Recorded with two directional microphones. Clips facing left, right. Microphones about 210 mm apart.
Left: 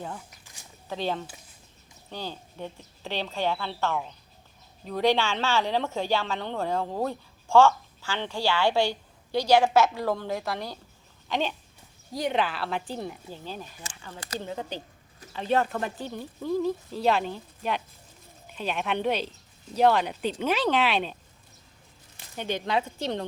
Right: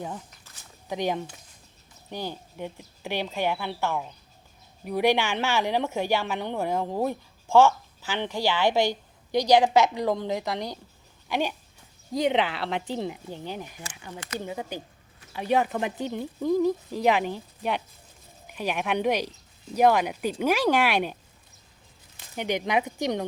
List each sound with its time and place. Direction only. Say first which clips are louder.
0.9 s a woman's voice: right 2 dB; 15° right (ahead or behind)
22.4 s a woman's voice: right 2 dB; 15° right (ahead or behind)